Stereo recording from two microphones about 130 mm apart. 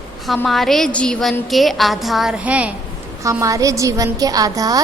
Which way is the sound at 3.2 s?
25° right (ahead or behind).